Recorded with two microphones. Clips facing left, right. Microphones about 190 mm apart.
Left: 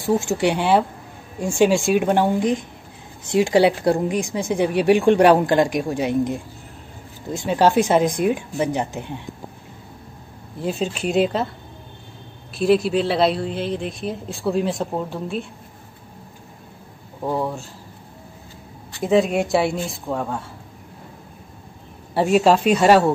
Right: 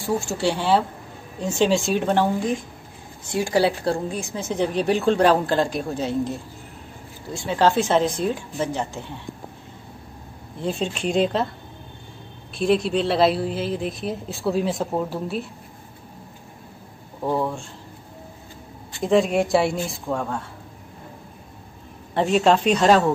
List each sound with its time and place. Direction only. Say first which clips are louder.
0.0 s a woman's voice: left 4 dB; 15° left (ahead or behind)
10.6 s a woman's voice: left 1 dB; 5° left (ahead or behind)
12.5 s a woman's voice: left 3 dB; 5° left (ahead or behind)
17.2 s a woman's voice: even; centre (ahead or behind)
19.0 s a woman's voice: left 1 dB; centre (ahead or behind)
22.1 s a woman's voice: left 2 dB; 10° left (ahead or behind)